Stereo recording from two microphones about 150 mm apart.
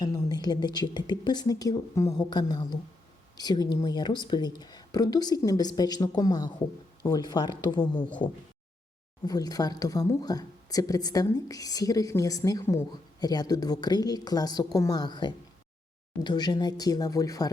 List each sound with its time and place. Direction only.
0.0 s speech: 25° left (ahead or behind)
9.2 s speech: 25° left (ahead or behind)